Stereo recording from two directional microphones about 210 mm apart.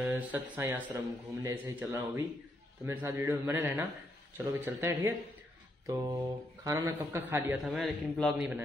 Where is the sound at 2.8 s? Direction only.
10° right (ahead or behind).